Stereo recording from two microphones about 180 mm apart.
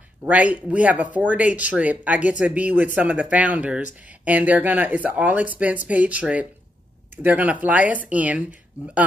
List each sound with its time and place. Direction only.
0.2 s speech: 10° right (ahead or behind)